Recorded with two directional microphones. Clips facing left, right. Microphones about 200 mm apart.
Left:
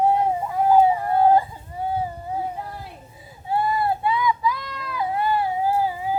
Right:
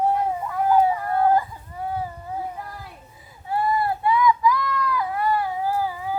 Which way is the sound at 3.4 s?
25° left (ahead or behind).